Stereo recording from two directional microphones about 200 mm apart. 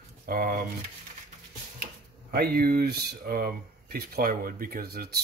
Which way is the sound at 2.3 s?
50° right (ahead or behind).